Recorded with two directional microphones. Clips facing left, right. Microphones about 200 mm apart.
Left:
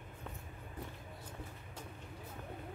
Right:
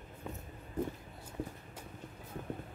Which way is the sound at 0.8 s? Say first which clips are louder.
Right 12 dB; 45° right (ahead or behind).